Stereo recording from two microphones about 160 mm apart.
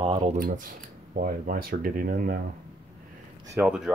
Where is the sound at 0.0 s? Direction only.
35° right (ahead or behind).